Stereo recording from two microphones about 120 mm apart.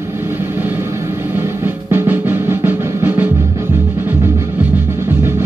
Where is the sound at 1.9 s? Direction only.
20° right (ahead or behind).